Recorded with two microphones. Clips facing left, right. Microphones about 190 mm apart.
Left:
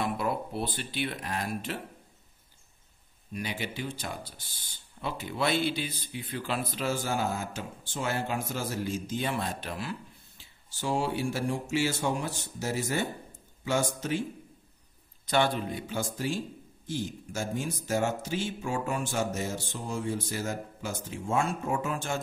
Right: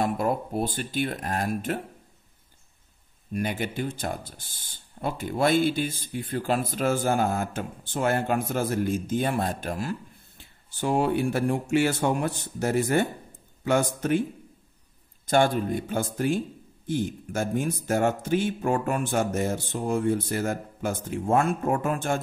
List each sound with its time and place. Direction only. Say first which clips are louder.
0.0 s speech: right 5 dB; 45° right (ahead or behind)
3.3 s a man's voice: right 7 dB; 50° right (ahead or behind)
15.2 s a man's voice: right 5 dB; 45° right (ahead or behind)